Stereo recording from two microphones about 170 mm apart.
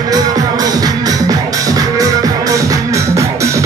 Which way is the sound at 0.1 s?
20° right (ahead or behind).